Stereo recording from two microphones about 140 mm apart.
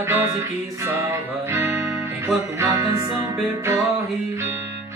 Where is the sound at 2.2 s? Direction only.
20° right (ahead or behind).